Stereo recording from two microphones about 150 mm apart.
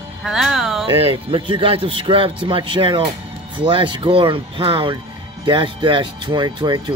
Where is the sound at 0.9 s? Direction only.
40° right (ahead or behind).